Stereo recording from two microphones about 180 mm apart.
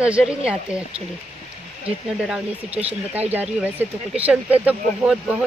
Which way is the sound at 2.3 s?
10° right (ahead or behind).